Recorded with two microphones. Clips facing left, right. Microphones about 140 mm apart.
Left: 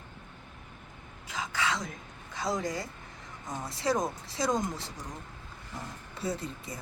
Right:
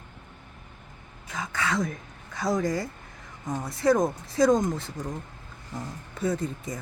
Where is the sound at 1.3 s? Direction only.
25° left (ahead or behind).